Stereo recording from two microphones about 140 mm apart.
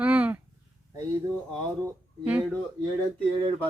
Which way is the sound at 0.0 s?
10° right (ahead or behind).